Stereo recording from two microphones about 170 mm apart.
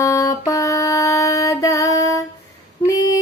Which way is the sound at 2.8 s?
20° left (ahead or behind).